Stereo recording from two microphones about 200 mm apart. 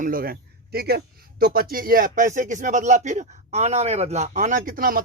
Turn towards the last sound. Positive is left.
turn(degrees=-45)  # may be behind; listen again after turning